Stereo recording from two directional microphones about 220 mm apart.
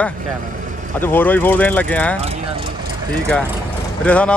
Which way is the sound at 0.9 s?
10° left (ahead or behind).